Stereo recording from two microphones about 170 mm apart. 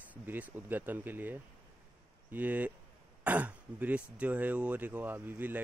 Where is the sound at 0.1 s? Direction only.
10° right (ahead or behind).